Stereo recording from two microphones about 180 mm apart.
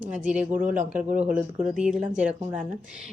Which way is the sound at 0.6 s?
45° right (ahead or behind).